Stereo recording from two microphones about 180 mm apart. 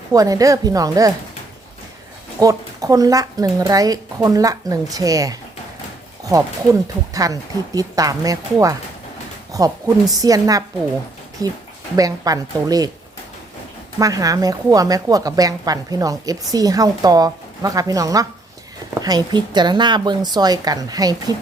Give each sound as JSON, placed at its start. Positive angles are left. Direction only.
{"t": 0.1, "sound": "a woman's voice", "side_deg": -20}
{"t": 2.4, "sound": "a woman's voice", "side_deg": -20}
{"t": 7.1, "sound": "a woman's voice", "side_deg": -20}
{"t": 14.0, "sound": "a woman's voice", "side_deg": -20}